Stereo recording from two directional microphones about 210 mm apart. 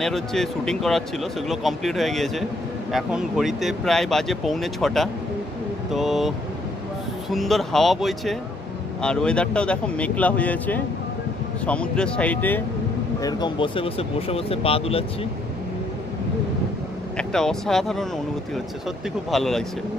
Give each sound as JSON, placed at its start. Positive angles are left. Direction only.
{"t": 0.0, "sound": "speech", "side_deg": 0}
{"t": 13.2, "sound": "speech", "side_deg": 20}
{"t": 17.2, "sound": "speech", "side_deg": 0}
{"t": 19.3, "sound": "speech", "side_deg": 0}